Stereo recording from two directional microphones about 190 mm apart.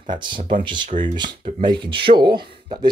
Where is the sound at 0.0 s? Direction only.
25° right (ahead or behind).